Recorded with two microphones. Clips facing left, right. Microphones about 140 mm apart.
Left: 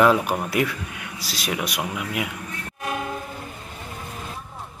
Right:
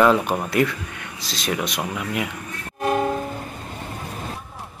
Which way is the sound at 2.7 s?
40° right (ahead or behind).